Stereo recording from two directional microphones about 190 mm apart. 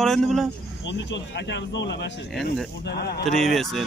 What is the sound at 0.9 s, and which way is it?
Speech, 70° left (ahead or behind).